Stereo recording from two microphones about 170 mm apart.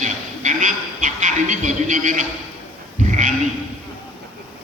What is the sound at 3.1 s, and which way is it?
Sheep, 45° right (ahead or behind).